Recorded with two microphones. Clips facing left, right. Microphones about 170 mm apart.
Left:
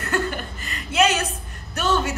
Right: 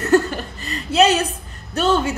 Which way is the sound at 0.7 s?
35° right (ahead or behind).